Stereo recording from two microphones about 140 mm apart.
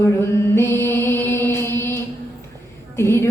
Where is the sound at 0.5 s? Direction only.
15° left (ahead or behind).